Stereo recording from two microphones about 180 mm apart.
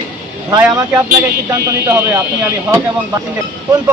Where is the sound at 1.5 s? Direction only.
15° right (ahead or behind).